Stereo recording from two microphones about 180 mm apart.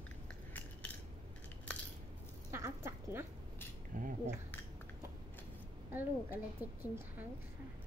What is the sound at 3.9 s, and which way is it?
Cutlery, 50° right (ahead or behind).